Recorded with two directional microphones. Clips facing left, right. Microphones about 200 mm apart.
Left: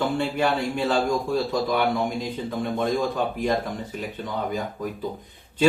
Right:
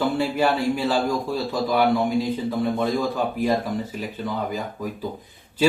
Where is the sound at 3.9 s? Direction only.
Centre (ahead or behind).